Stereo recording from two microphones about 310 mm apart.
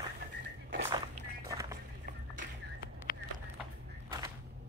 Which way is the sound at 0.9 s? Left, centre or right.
Centre.